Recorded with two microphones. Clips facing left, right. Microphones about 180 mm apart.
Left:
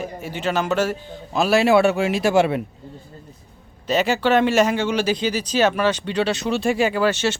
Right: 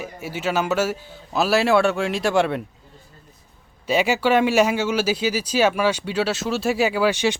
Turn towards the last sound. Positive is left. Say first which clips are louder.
# even
turn(degrees=-10)  # may be behind; listen again after turning